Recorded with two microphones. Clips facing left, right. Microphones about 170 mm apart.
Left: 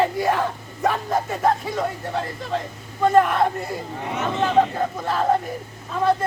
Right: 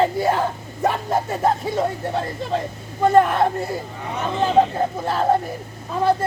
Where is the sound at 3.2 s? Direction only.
30° right (ahead or behind).